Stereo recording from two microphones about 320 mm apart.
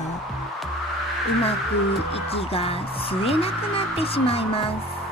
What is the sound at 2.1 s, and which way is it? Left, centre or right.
Speech, centre.